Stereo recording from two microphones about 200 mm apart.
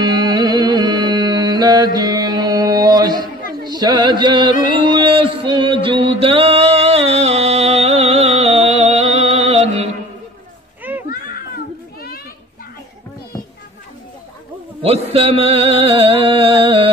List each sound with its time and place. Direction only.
0.0 s music: 20° right (ahead or behind)
10.8 s a sound: 10° right (ahead or behind)
11.1 s children playing: 45° left (ahead or behind)
14.8 s music: 30° right (ahead or behind)